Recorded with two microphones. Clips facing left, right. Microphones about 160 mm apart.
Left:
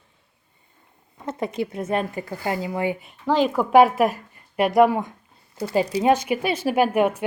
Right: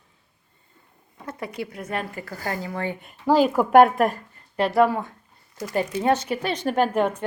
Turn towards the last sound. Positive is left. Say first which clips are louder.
# left 2 dB
turn(degrees=10)  # may be behind; listen again after turning